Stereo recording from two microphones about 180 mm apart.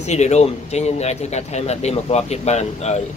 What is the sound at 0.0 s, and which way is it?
Speech, 40° left (ahead or behind).